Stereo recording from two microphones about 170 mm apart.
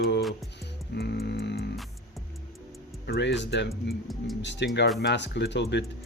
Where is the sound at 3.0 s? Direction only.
85° left.